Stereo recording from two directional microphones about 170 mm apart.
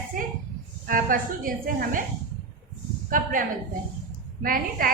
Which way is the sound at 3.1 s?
55° right (ahead or behind).